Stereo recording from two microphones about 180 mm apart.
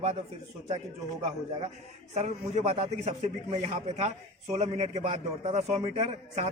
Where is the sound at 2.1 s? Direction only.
40° right (ahead or behind).